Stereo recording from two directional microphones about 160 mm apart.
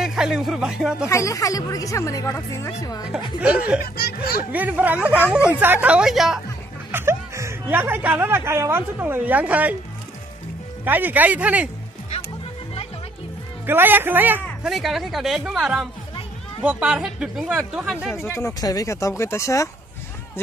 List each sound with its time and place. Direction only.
0.0 s speech: 5° right (ahead or behind)
1.0 s speech: 20° left (ahead or behind)
3.3 s speech: 10° right (ahead or behind)
3.8 s speech: 70° left (ahead or behind)
4.5 s speech: 10° right (ahead or behind)
6.9 s speech: 15° right (ahead or behind)
10.9 s speech: 10° right (ahead or behind)
13.7 s speech: 10° right (ahead or behind)
14.6 s speech: centre (ahead or behind)
18.1 s speech: 15° left (ahead or behind)